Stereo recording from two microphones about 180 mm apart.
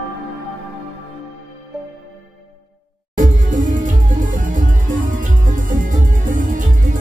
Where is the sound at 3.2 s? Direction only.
45° right (ahead or behind).